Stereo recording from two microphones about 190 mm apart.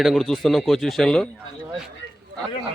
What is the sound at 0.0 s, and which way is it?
Speech, centre (ahead or behind).